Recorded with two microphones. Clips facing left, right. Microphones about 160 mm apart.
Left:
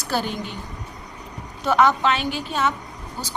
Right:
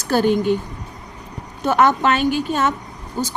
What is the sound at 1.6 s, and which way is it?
A woman's voice, 50° right (ahead or behind).